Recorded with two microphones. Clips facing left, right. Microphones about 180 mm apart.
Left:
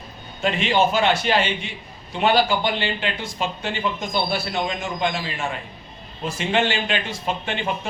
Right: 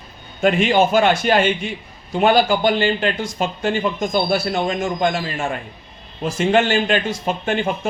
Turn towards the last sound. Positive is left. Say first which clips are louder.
# right 5 dB
turn(degrees=-45)  # may be behind; listen again after turning